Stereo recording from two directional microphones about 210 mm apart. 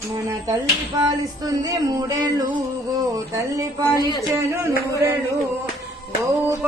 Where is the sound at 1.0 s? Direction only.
20° right (ahead or behind).